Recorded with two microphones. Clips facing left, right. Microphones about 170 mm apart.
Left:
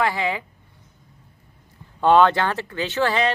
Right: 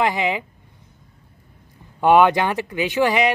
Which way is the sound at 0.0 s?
20° right (ahead or behind).